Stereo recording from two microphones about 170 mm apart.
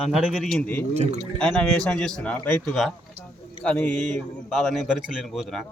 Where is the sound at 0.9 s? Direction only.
40° right (ahead or behind).